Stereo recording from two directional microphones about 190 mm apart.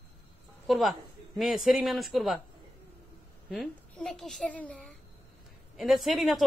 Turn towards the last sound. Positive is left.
turn(degrees=0)  # may be behind; listen again after turning